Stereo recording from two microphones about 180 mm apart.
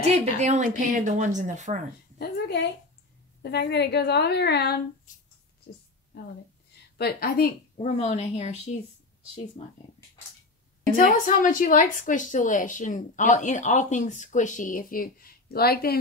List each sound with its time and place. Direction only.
0.0 s a woman's voice: 40° right (ahead or behind)
2.1 s a woman's voice: 60° left (ahead or behind)
7.0 s a woman's voice: 60° left (ahead or behind)
7.7 s a woman's voice: 40° left (ahead or behind)
11.0 s a woman's voice: 50° left (ahead or behind)